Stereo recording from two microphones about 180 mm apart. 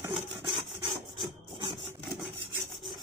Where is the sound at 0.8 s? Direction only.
25° right (ahead or behind).